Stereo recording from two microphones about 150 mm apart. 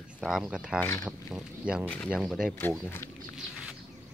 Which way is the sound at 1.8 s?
5° left (ahead or behind).